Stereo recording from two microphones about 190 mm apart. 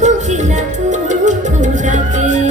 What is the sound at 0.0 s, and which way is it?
Music, 40° right (ahead or behind).